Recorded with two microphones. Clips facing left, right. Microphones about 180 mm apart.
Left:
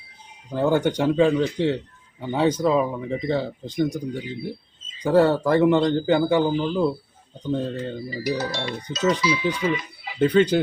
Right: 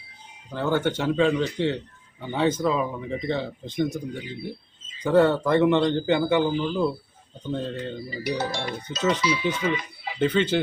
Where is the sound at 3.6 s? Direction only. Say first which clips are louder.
Left 1 dB; 10° left (ahead or behind).